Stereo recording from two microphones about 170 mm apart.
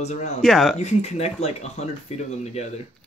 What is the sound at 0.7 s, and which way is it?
Speech, 40° left (ahead or behind).